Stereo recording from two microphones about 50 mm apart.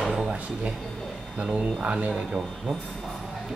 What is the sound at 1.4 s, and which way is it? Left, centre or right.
A man's voice, right.